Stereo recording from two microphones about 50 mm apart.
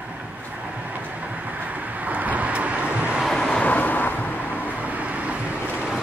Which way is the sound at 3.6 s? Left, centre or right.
Left.